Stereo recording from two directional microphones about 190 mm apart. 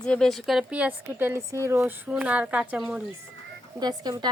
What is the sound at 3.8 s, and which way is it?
Speech, 20° right (ahead or behind).